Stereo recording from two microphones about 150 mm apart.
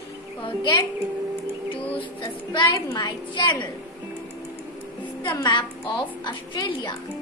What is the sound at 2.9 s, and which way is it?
Speech, 30° left (ahead or behind).